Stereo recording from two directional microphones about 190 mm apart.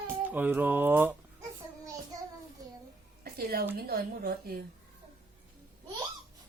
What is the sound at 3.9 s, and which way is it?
Speech, 50° right (ahead or behind).